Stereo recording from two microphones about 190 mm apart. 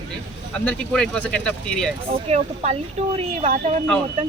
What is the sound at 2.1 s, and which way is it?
Speech, 35° right (ahead or behind).